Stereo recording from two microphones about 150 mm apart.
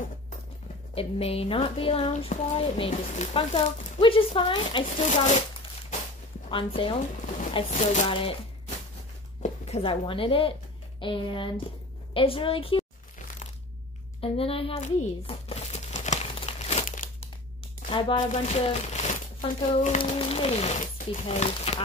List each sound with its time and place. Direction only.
0.9 s speech: 40° left (ahead or behind)
5.0 s speech: 50° left (ahead or behind)
6.5 s speech: 35° left (ahead or behind)
7.7 s speech: 55° left (ahead or behind)
8.1 s speech: 35° left (ahead or behind)
9.4 s speech: 40° left (ahead or behind)
14.2 s crumpling: 40° left (ahead or behind)
17.8 s crumpling: 35° left (ahead or behind)
18.3 s speech: 45° left (ahead or behind)
20.0 s speech: 35° left (ahead or behind)